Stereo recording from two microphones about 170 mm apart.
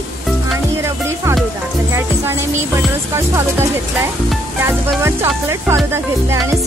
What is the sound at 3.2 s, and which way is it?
Speech, 15° right (ahead or behind).